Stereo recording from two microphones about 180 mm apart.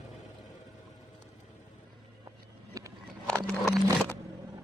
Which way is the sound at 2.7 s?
20° right (ahead or behind).